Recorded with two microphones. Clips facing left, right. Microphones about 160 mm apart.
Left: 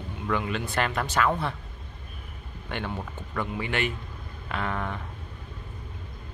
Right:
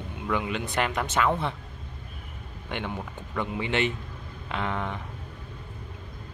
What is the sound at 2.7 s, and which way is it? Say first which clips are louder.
Speech: even; 15° right (ahead or behind).